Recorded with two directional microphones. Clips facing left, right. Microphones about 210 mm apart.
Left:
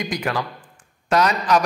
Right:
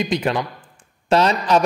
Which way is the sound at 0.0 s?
25° right (ahead or behind).